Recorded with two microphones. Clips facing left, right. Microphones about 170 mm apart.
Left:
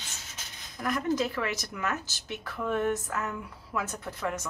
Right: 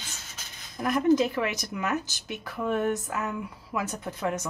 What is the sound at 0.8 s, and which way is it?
Speech, 20° right (ahead or behind).